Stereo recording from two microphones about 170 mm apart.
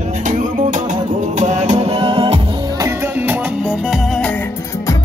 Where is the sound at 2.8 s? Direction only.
15° right (ahead or behind).